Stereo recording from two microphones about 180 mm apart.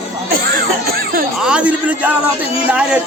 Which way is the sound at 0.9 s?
60° right (ahead or behind).